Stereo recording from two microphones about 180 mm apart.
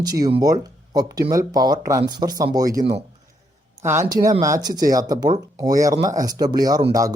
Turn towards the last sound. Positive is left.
turn(degrees=-20)  # may be behind; listen again after turning